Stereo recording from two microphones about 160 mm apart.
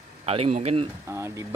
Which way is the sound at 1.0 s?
15° right (ahead or behind).